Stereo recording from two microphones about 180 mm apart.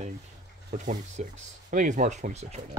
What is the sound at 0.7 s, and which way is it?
Speech, 45° right (ahead or behind).